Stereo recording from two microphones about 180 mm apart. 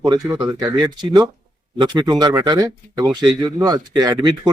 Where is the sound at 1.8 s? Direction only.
20° right (ahead or behind).